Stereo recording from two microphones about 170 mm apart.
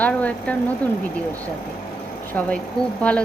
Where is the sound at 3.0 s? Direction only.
5° left (ahead or behind).